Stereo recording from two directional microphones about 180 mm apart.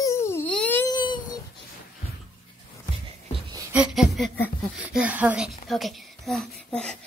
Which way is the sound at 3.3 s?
20° right (ahead or behind).